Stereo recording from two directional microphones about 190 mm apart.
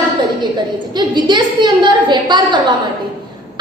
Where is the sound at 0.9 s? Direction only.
25° right (ahead or behind).